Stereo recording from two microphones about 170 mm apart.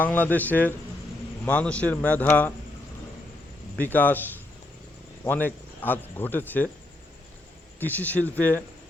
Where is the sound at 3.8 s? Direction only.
10° left (ahead or behind).